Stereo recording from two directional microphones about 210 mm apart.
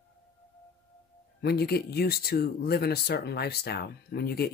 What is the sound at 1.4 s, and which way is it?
Speech, 50° left (ahead or behind).